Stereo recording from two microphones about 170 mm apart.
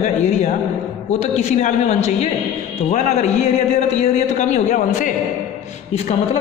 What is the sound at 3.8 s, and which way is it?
A man's voice, 40° left (ahead or behind).